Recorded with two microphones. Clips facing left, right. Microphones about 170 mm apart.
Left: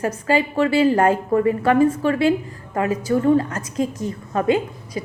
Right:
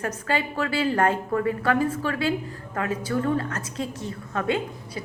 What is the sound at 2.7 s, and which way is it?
Speech, 10° left (ahead or behind).